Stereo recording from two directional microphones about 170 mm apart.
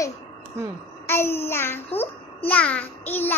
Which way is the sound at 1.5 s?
15° left (ahead or behind).